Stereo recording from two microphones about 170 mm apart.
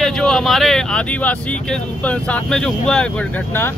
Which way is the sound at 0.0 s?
Centre (ahead or behind).